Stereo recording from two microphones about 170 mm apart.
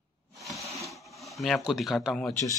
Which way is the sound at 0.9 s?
Centre (ahead or behind).